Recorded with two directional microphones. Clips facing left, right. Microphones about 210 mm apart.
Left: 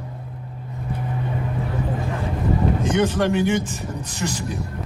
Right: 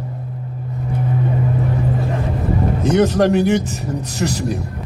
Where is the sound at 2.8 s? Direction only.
40° right (ahead or behind).